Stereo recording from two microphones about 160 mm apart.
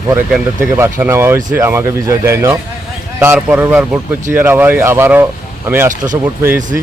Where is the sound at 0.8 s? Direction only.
15° right (ahead or behind).